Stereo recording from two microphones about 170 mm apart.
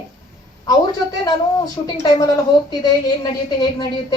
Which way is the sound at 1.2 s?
20° left (ahead or behind).